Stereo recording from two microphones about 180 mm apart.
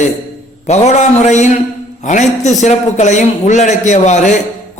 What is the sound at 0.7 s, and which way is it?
A man's voice, 40° left (ahead or behind).